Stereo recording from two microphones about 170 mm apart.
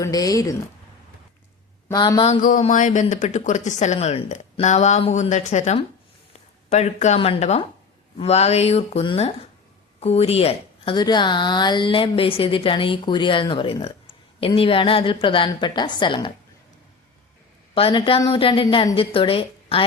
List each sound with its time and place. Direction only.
0.0 s a woman's voice: 20° left (ahead or behind)
1.9 s a woman's voice: 25° left (ahead or behind)
2.2 s a woman's voice: 45° left (ahead or behind); by 16.3 s 30° left (ahead or behind)
17.7 s a woman's voice: 30° left (ahead or behind)